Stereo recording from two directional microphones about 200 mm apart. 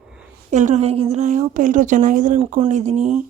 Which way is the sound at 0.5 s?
35° right (ahead or behind).